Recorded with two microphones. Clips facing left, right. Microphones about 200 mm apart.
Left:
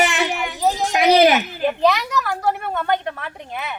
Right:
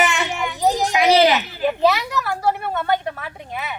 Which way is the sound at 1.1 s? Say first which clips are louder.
Left 2 dB; 50° left (ahead or behind).